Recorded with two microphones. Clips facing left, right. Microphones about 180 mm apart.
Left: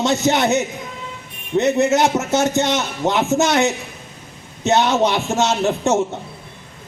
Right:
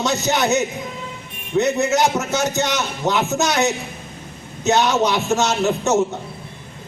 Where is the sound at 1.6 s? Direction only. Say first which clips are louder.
Left 2 dB; 25° left (ahead or behind).